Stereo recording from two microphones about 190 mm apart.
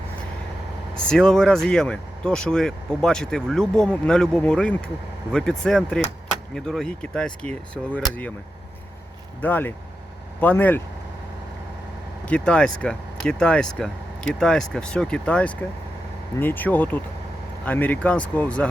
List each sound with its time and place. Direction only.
1.0 s speech: 5° left (ahead or behind)
9.4 s speech: 10° left (ahead or behind)
12.3 s speech: 5° left (ahead or behind)